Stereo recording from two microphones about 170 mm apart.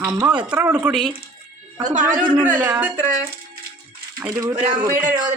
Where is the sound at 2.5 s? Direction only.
10° right (ahead or behind).